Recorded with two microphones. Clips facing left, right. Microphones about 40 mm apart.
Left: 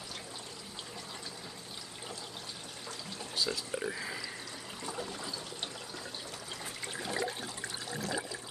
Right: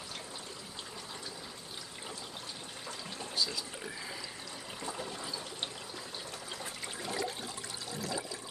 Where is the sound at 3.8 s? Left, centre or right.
Centre.